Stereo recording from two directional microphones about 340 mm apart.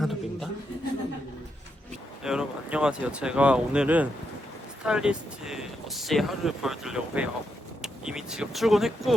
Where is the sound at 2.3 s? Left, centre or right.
Centre.